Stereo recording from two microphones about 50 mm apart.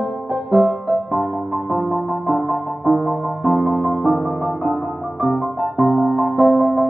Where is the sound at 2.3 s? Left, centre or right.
Right.